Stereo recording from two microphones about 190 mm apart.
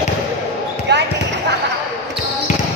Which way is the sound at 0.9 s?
65° right (ahead or behind).